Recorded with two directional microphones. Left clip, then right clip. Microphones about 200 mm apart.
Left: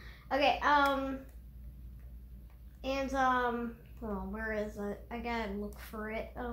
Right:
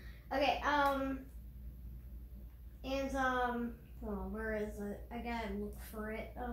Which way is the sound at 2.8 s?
45° left (ahead or behind).